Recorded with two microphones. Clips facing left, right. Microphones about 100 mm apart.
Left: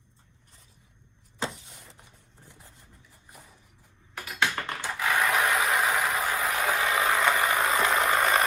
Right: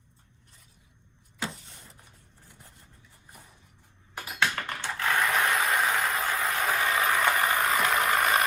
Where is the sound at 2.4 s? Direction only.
20° left (ahead or behind).